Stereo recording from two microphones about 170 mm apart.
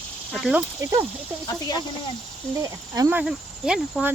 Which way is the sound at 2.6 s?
20° right (ahead or behind).